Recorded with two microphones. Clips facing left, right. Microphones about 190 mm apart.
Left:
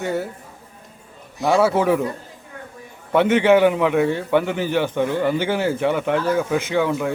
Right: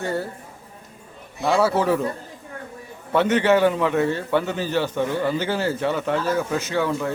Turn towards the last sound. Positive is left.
turn(degrees=15)  # may be behind; listen again after turning